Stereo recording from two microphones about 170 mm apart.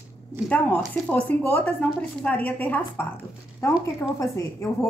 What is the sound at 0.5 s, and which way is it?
Speech, 10° left (ahead or behind).